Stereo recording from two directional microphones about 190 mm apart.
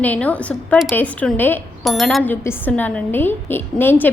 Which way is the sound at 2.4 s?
10° left (ahead or behind).